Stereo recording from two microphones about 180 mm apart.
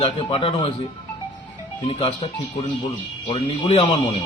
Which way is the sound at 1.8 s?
30° left (ahead or behind).